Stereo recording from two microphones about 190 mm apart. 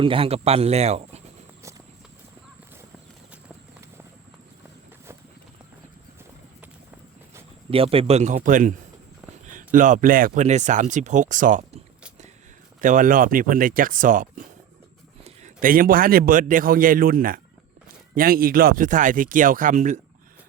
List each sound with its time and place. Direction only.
0.0 s speech: 30° right (ahead or behind)
7.7 s speech: 30° right (ahead or behind)
12.8 s a man's voice: 45° right (ahead or behind)